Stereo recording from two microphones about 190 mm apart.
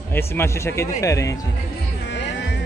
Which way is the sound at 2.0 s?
65° left (ahead or behind).